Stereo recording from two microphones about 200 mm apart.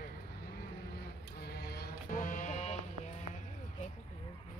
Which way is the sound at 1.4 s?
50° left (ahead or behind).